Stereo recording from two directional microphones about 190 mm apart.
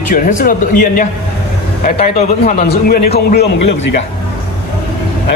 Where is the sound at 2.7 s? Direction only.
55° left (ahead or behind).